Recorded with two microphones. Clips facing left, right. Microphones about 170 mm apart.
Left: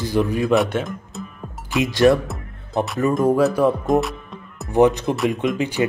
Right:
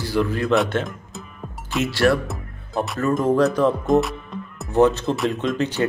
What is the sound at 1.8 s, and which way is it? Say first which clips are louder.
Speech: left 4 dB; 20° left (ahead or behind).